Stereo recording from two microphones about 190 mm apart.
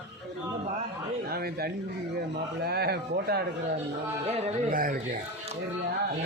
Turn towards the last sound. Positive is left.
turn(degrees=-50)  # may be behind; listen again after turning